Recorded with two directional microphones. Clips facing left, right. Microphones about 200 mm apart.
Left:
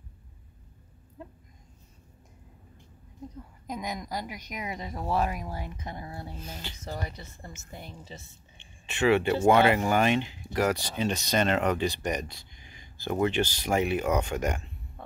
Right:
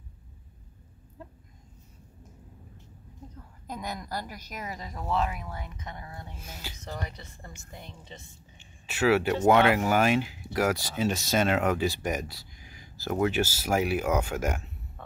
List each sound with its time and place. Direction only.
3.6 s speech: 15° left (ahead or behind); by 6.3 s 30° left (ahead or behind)
6.3 s speech: 10° right (ahead or behind)
7.0 s speech: 30° left (ahead or behind)
7.8 s speech: 5° left (ahead or behind)